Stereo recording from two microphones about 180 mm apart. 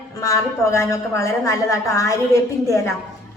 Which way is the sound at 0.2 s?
15° left (ahead or behind).